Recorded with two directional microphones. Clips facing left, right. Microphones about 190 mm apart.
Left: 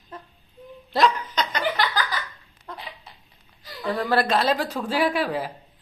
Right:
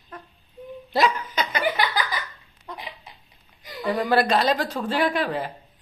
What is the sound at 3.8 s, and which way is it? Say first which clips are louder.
Speech: right 2 dB; centre (ahead or behind).